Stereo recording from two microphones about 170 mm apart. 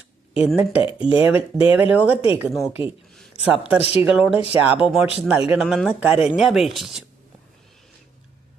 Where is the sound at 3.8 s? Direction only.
35° left (ahead or behind).